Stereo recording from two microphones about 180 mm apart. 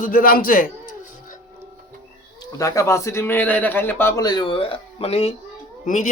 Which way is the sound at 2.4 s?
20° left (ahead or behind).